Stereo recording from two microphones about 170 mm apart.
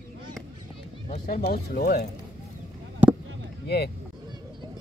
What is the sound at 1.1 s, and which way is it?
Speech, 55° left (ahead or behind).